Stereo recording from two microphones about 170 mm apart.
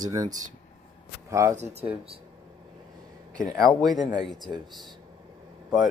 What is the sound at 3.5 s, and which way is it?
Speech, centre (ahead or behind).